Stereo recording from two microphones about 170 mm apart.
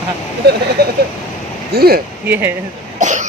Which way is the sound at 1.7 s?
65° right (ahead or behind).